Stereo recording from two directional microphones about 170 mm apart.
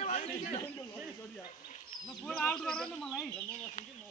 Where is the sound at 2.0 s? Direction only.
5° left (ahead or behind).